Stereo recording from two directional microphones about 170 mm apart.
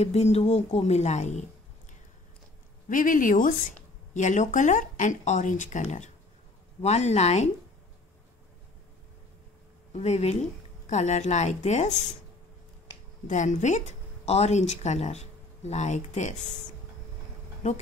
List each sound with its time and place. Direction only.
0.0 s a woman's voice: 40° left (ahead or behind)
2.9 s a woman's voice: 50° left (ahead or behind)
9.9 s a woman's voice: 40° left (ahead or behind)
13.3 s a woman's voice: 45° left (ahead or behind)
17.6 s speech: 45° left (ahead or behind)